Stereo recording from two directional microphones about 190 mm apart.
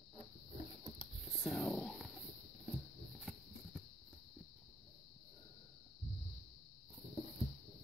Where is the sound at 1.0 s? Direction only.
Centre (ahead or behind).